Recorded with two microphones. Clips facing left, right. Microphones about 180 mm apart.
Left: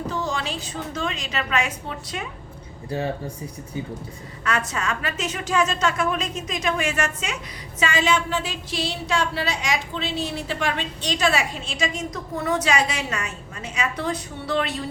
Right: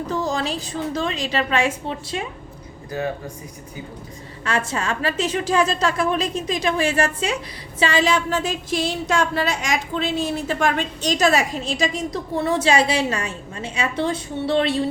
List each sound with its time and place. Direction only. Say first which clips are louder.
0.1 s a woman's voice: right 4 dB; 40° right (ahead or behind)
2.9 s speech: even; 30° left (ahead or behind)
4.4 s a woman's voice: right 2 dB; 30° right (ahead or behind)